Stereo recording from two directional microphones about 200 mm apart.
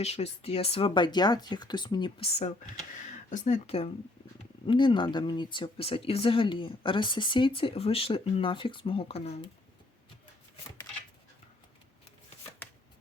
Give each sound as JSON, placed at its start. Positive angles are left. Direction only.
{"t": 0.0, "sound": "speech", "side_deg": 30}
{"t": 2.9, "sound": "speech", "side_deg": 40}